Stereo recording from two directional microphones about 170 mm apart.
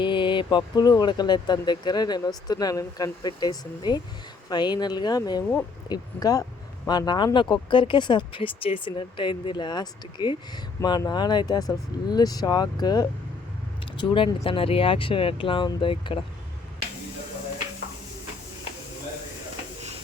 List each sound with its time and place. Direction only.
0.0 s speech: 30° left (ahead or behind)